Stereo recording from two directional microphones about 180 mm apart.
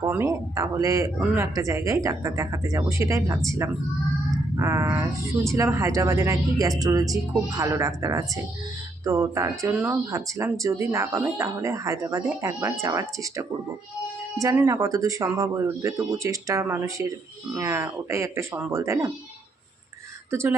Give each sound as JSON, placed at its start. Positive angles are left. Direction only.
{"t": 0.0, "sound": "speech", "side_deg": -15}
{"t": 20.3, "sound": "speech", "side_deg": -15}